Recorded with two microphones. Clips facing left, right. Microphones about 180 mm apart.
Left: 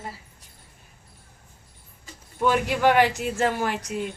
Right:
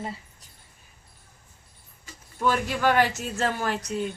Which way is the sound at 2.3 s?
15° left (ahead or behind).